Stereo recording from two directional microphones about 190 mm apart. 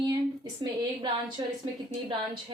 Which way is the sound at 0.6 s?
20° right (ahead or behind).